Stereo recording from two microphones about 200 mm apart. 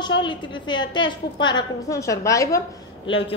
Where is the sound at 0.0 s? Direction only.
25° left (ahead or behind).